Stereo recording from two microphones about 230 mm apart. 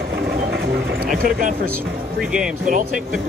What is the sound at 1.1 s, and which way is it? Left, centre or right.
Speech, right.